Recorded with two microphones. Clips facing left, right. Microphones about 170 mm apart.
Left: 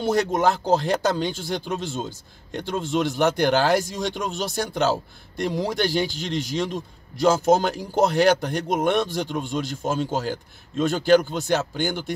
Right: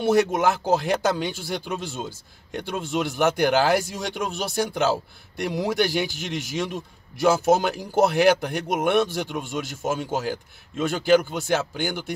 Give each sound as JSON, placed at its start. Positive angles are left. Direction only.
{"t": 0.0, "sound": "a man's voice", "side_deg": -10}